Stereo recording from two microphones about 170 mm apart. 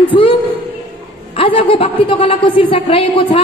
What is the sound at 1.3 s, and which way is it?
A woman's voice, 30° left (ahead or behind).